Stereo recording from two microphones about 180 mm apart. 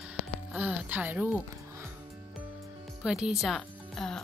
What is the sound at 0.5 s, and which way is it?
Music, 10° right (ahead or behind).